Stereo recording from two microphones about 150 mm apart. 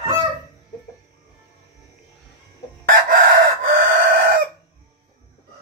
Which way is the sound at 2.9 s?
65° right (ahead or behind).